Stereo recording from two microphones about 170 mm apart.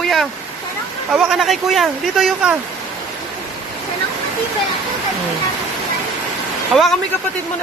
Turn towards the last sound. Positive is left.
turn(degrees=0)  # may be behind; listen again after turning